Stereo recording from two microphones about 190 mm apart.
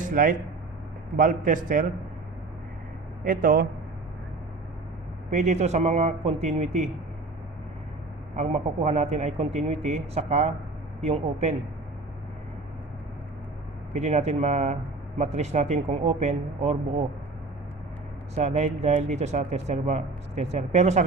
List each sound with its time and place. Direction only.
0.0 s a man's voice: 45° right (ahead or behind)
3.2 s a man's voice: 50° right (ahead or behind)
5.3 s speech: 40° right (ahead or behind)
8.4 s speech: 35° right (ahead or behind)
13.9 s speech: 35° right (ahead or behind)
18.3 s speech: 40° right (ahead or behind)